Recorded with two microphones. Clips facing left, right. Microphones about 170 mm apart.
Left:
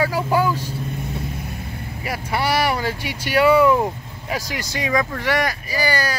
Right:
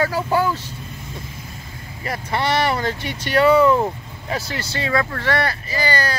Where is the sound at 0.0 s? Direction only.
10° left (ahead or behind).